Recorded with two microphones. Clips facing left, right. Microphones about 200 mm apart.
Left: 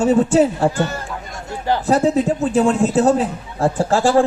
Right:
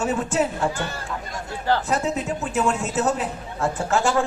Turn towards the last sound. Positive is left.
turn(degrees=35)  # may be behind; listen again after turning